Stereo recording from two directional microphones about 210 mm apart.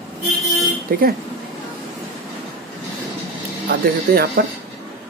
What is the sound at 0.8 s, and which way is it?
Speech, 45° right (ahead or behind).